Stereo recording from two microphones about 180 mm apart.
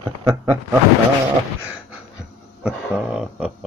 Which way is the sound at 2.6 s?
5° right (ahead or behind).